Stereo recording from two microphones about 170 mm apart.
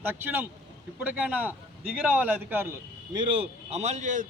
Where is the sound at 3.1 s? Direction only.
30° right (ahead or behind); by 4.2 s 45° right (ahead or behind).